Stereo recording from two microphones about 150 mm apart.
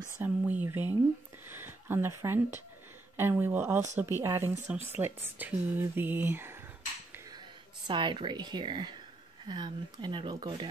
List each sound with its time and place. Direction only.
0.2 s a sound: 10° right (ahead or behind)
1.5 s speech: 15° right (ahead or behind)
7.8 s speech: 30° right (ahead or behind)